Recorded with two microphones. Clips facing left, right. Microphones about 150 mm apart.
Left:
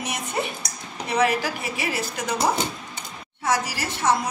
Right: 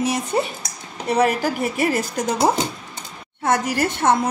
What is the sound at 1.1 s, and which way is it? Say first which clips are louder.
A woman's voice: right 4 dB; 45° right (ahead or behind).